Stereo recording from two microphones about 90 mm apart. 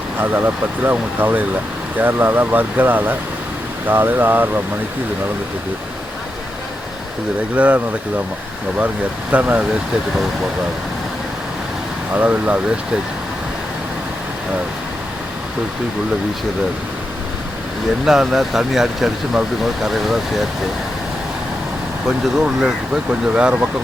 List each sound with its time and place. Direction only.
0.2 s speech: 25° right (ahead or behind)
7.5 s speech: 15° right (ahead or behind)
9.3 s speech: 15° right (ahead or behind)
12.1 s speech: 15° right (ahead or behind)
18.0 s speech: 5° right (ahead or behind)
22.0 s speech: 10° right (ahead or behind)